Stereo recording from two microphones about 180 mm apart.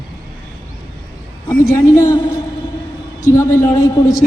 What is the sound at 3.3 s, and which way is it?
Speech, 15° left (ahead or behind).